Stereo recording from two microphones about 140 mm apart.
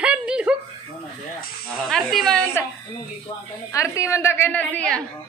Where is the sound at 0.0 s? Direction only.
10° right (ahead or behind).